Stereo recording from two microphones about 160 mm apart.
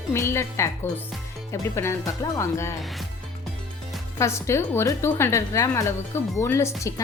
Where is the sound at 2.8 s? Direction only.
Centre (ahead or behind).